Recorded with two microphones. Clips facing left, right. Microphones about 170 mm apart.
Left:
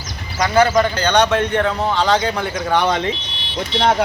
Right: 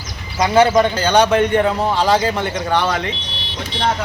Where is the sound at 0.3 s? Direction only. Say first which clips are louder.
Right 2 dB; 25° right (ahead or behind).